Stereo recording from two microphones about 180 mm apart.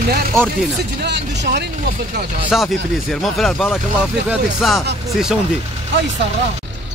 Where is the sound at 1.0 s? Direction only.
70° right (ahead or behind).